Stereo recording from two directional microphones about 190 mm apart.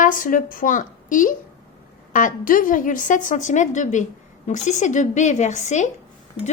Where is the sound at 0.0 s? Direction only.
45° left (ahead or behind).